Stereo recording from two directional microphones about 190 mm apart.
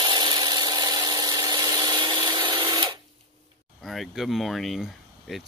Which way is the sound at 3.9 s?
Centre (ahead or behind).